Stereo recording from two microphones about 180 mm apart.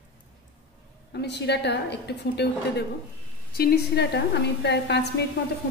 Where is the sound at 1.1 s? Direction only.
65° left (ahead or behind).